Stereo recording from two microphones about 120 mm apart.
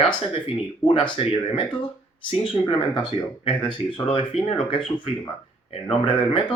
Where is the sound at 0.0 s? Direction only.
50° left (ahead or behind).